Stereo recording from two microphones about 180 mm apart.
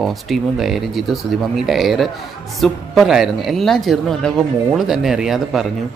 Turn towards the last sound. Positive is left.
turn(degrees=0)  # may be behind; listen again after turning